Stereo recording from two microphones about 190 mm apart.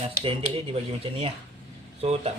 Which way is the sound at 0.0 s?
30° right (ahead or behind).